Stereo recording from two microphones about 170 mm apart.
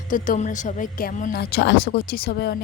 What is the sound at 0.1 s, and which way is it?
Speech, 50° left (ahead or behind).